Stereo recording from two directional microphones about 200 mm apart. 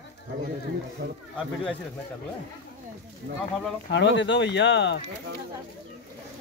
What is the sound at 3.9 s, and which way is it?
Speech, 65° left (ahead or behind).